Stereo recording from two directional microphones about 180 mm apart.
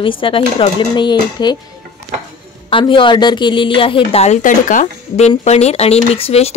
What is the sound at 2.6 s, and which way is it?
A woman's voice, 30° left (ahead or behind).